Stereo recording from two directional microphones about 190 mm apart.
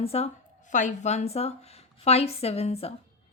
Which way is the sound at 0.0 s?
30° left (ahead or behind).